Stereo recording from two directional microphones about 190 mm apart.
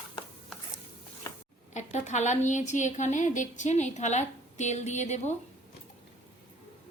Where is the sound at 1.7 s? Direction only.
40° left (ahead or behind).